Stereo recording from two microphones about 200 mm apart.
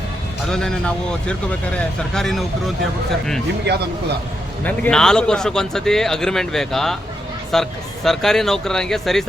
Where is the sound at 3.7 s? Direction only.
55° right (ahead or behind).